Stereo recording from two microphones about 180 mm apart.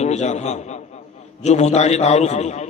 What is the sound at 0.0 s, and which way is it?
A man's voice, 40° left (ahead or behind).